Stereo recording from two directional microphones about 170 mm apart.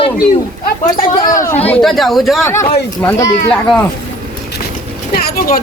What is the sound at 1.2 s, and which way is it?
Chatter, 50° left (ahead or behind).